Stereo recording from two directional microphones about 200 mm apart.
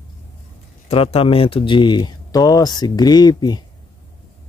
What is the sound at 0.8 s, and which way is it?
Speech, 30° left (ahead or behind).